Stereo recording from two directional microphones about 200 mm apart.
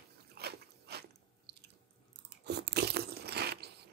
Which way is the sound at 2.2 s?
55° right (ahead or behind).